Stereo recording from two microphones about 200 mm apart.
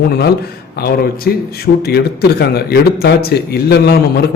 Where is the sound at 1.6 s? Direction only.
50° left (ahead or behind).